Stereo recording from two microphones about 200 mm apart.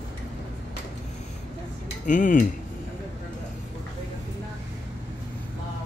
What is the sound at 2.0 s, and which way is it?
Speech, 40° left (ahead or behind).